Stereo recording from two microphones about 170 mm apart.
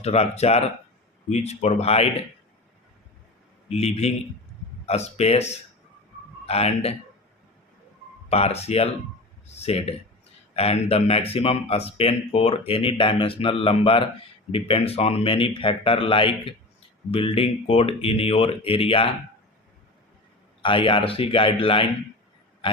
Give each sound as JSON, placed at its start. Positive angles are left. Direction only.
{"t": 0.0, "sound": "speech", "side_deg": 40}
{"t": 3.7, "sound": "a man's voice", "side_deg": 40}
{"t": 8.3, "sound": "speech", "side_deg": 35}
{"t": 20.6, "sound": "speech", "side_deg": 30}
{"t": 22.6, "sound": "burping", "side_deg": 30}